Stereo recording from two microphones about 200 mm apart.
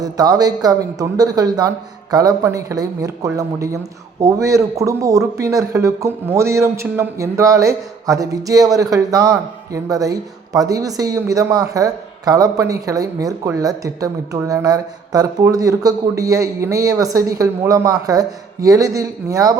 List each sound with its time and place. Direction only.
0.0 s a man's voice: 20° right (ahead or behind)